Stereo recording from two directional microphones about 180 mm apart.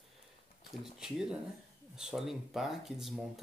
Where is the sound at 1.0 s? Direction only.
5° right (ahead or behind).